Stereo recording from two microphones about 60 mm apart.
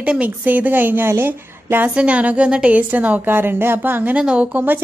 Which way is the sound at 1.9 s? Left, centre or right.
Right.